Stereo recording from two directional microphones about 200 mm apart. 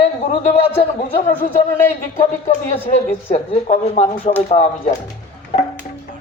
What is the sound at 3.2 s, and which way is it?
Speech, 30° left (ahead or behind).